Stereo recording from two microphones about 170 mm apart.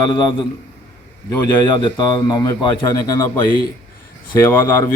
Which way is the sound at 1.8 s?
30° left (ahead or behind).